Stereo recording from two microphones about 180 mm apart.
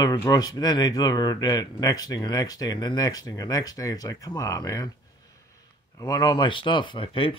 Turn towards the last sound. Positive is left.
turn(degrees=30)  # may be behind; listen again after turning